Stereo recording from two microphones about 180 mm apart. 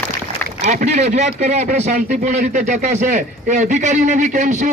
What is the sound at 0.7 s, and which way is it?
Speech, 40° right (ahead or behind).